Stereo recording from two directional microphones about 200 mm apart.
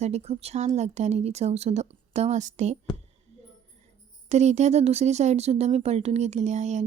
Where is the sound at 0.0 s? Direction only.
35° right (ahead or behind).